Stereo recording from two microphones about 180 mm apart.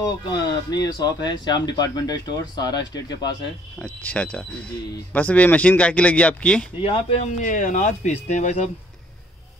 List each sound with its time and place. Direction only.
0.0 s speech: 20° left (ahead or behind)
3.8 s speech: 5° left (ahead or behind)
6.8 s speech: 30° left (ahead or behind)